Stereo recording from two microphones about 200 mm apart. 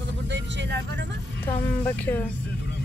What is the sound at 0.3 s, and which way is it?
Vehicle, 60° right (ahead or behind).